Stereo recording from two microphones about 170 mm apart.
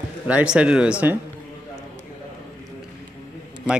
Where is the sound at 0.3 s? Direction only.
5° right (ahead or behind).